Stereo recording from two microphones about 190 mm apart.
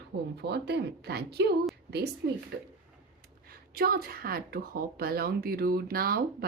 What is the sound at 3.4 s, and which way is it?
A woman's voice, 50° right (ahead or behind).